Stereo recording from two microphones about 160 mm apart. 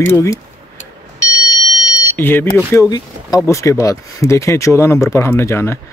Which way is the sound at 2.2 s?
15° left (ahead or behind).